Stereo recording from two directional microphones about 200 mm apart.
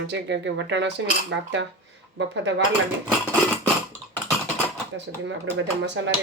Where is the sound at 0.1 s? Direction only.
60° right (ahead or behind).